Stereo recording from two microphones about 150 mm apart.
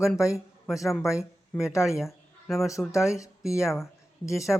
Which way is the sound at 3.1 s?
20° left (ahead or behind).